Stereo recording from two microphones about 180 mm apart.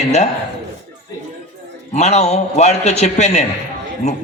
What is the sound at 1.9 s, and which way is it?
A man's voice, 40° left (ahead or behind).